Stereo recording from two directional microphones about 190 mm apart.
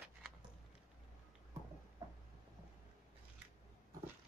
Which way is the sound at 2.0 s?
20° right (ahead or behind).